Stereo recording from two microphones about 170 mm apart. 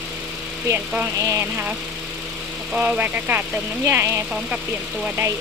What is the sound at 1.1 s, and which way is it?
Speech, 20° right (ahead or behind).